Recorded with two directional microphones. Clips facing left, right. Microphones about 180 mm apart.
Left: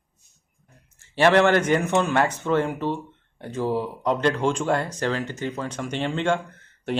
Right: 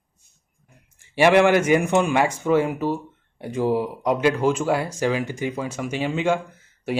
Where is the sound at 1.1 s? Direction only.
10° right (ahead or behind).